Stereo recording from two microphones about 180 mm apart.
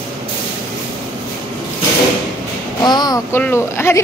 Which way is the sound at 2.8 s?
25° left (ahead or behind).